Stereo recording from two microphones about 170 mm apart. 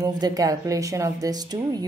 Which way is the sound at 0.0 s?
20° right (ahead or behind).